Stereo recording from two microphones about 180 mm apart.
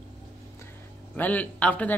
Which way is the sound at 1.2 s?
10° left (ahead or behind).